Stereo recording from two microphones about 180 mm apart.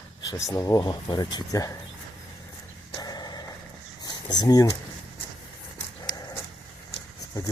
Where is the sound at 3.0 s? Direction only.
20° left (ahead or behind).